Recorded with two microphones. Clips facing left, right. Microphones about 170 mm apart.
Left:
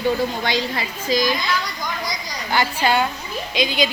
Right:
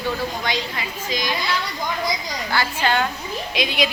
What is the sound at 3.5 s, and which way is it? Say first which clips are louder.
Speech: left 2 dB; centre (ahead or behind).